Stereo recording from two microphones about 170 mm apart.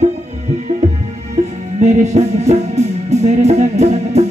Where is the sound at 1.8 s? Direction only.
40° right (ahead or behind).